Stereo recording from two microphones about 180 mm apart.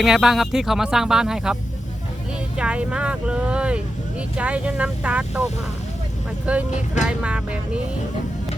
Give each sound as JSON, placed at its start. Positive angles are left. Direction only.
{"t": 0.0, "sound": "speech", "side_deg": 0}
{"t": 2.6, "sound": "speech", "side_deg": -5}
{"t": 6.4, "sound": "speech", "side_deg": -5}